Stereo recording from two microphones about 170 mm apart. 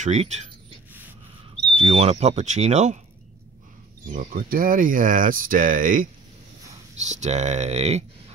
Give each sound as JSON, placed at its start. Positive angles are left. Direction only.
{"t": 0.0, "sound": "speech", "side_deg": -45}
{"t": 1.8, "sound": "speech", "side_deg": -35}
{"t": 4.1, "sound": "speech", "side_deg": -50}
{"t": 7.1, "sound": "speech", "side_deg": -40}